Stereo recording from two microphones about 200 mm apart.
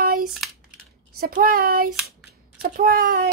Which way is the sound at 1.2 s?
45° right (ahead or behind).